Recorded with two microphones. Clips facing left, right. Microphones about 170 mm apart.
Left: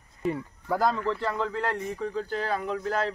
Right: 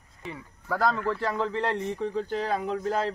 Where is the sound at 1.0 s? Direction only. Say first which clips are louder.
Right 1 dB; 10° right (ahead or behind).